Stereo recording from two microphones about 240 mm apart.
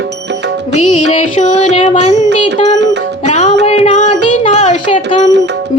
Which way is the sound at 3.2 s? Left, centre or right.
Left.